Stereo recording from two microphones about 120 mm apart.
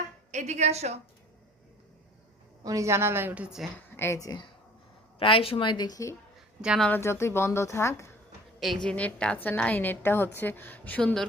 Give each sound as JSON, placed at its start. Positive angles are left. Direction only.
{"t": 0.3, "sound": "a woman's voice", "side_deg": -80}
{"t": 2.6, "sound": "a woman's voice", "side_deg": -25}
{"t": 3.9, "sound": "a woman's voice", "side_deg": 20}
{"t": 5.2, "sound": "speech", "side_deg": 50}
{"t": 6.6, "sound": "a woman's voice", "side_deg": -5}
{"t": 7.0, "sound": "a woman's voice", "side_deg": 20}
{"t": 8.6, "sound": "a woman's voice", "side_deg": 5}